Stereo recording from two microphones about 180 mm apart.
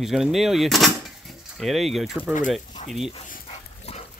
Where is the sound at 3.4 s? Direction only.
35° left (ahead or behind).